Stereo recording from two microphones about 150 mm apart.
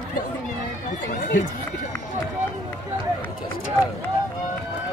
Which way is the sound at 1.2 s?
60° left (ahead or behind).